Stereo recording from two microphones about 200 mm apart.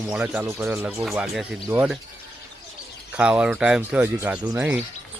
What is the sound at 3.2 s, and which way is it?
Speech, 5° right (ahead or behind).